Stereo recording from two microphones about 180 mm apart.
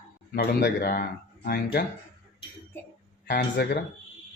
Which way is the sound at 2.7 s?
10° left (ahead or behind).